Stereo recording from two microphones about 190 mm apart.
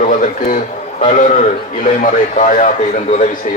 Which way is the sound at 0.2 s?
45° left (ahead or behind).